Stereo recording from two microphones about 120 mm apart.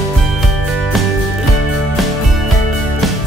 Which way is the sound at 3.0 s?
Centre (ahead or behind).